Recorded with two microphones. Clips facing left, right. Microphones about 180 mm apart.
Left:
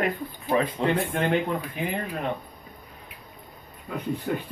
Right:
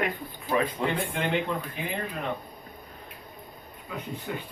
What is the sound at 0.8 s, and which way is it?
Speech, 20° left (ahead or behind).